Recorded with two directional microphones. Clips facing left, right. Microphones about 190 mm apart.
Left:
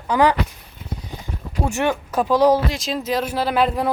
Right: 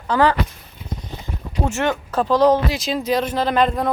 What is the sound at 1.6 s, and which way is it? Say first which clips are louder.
Speech: even; 15° left (ahead or behind).